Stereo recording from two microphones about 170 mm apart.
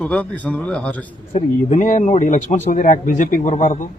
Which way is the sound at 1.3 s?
45° left (ahead or behind).